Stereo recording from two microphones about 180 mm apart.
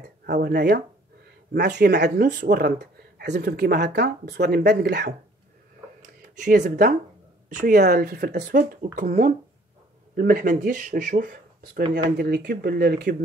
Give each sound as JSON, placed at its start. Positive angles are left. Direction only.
{"t": 0.3, "sound": "speech", "side_deg": -60}
{"t": 6.3, "sound": "speech", "side_deg": -45}
{"t": 12.2, "sound": "speech", "side_deg": -60}